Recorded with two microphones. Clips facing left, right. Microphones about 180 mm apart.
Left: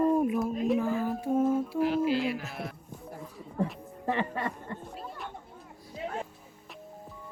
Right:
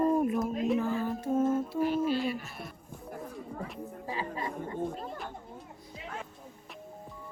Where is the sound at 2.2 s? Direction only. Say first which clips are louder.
Left 2 dB; 90° left.